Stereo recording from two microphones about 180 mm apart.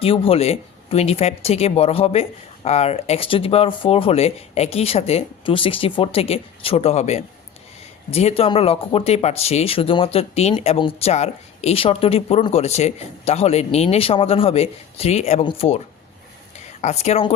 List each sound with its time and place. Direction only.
0.0 s speech: 30° left (ahead or behind)
16.8 s speech: 35° left (ahead or behind)